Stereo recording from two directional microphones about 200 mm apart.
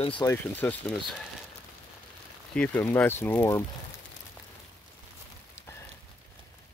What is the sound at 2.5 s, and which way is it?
Speech, 5° left (ahead or behind).